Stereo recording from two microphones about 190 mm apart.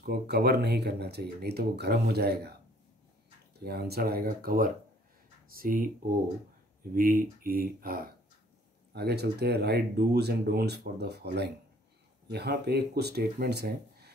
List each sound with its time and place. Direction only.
0.0 s speech: 55° right (ahead or behind)
3.6 s speech: 55° right (ahead or behind)
8.9 s speech: 60° right (ahead or behind)
12.3 s speech: 60° right (ahead or behind)